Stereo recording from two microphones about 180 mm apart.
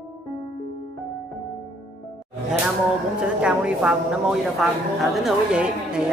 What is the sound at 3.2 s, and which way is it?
A man's voice, 5° right (ahead or behind).